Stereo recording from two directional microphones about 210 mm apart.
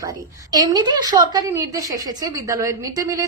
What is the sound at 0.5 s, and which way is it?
A woman's voice, 20° right (ahead or behind).